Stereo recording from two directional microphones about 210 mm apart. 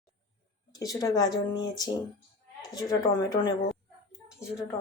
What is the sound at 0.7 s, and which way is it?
Speech, 15° left (ahead or behind).